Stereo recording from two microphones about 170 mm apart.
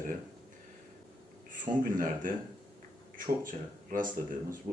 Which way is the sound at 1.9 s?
55° right (ahead or behind).